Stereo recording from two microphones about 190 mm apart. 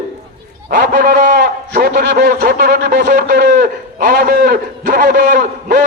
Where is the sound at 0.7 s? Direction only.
45° right (ahead or behind).